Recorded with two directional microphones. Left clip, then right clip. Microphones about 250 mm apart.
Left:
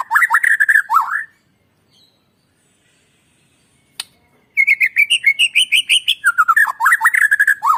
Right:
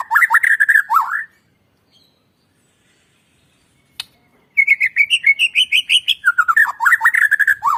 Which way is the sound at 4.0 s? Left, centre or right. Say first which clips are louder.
Even; centre.